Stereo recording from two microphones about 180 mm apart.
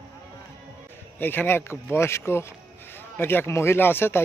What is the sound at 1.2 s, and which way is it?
Speech, 10° left (ahead or behind).